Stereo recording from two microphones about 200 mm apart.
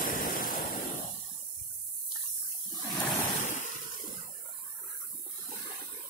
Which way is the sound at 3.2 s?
35° left (ahead or behind).